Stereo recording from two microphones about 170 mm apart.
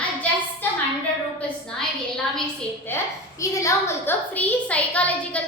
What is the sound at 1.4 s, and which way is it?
Speech, 5° left (ahead or behind).